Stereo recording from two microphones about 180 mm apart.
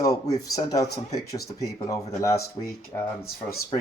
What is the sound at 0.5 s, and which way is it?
Speech, 20° left (ahead or behind).